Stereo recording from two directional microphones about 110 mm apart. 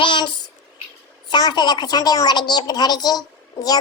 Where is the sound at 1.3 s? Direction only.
40° left (ahead or behind).